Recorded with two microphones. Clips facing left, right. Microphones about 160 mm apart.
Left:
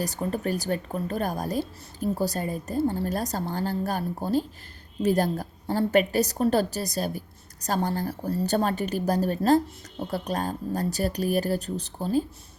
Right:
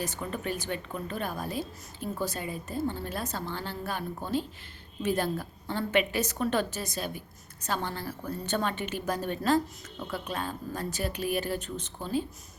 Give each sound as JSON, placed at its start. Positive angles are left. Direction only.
{"t": 0.0, "sound": "a woman's voice", "side_deg": 40}